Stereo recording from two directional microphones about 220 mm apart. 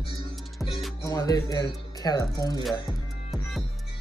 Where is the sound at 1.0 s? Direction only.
15° left (ahead or behind).